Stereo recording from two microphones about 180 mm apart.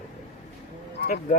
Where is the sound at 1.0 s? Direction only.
45° left (ahead or behind).